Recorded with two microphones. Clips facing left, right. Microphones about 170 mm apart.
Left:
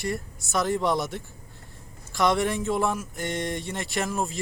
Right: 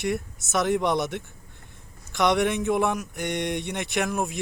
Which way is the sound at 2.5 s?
20° right (ahead or behind).